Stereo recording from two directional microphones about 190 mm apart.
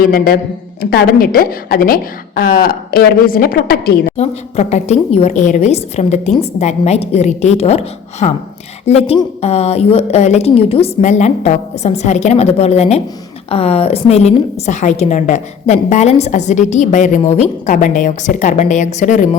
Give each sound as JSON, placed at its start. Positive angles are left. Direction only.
{"t": 0.0, "sound": "a woman's voice", "side_deg": 50}
{"t": 4.2, "sound": "a woman's voice", "side_deg": 35}